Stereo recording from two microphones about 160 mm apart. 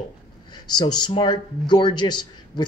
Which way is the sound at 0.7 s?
25° left (ahead or behind).